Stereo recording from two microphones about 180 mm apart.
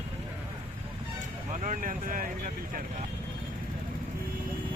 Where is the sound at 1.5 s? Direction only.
45° right (ahead or behind).